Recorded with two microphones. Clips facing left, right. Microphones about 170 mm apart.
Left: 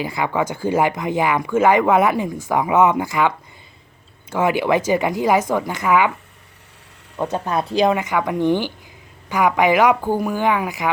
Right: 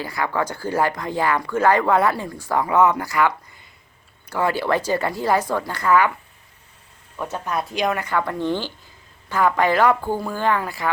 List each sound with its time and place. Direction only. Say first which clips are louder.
0.0 s a woman's voice: left 3 dB; 20° left (ahead or behind)
7.2 s a woman's voice: left 4 dB; 30° left (ahead or behind)
7.9 s a woman's voice: left 3 dB; 15° left (ahead or behind)